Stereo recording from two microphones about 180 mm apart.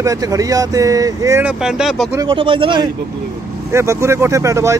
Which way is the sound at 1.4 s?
5° right (ahead or behind).